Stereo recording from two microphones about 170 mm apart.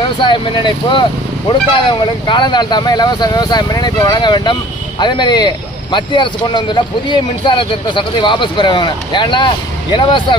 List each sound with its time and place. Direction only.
0.2 s speech: 30° left (ahead or behind)